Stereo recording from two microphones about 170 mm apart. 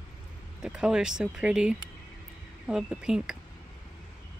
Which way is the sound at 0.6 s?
5° right (ahead or behind).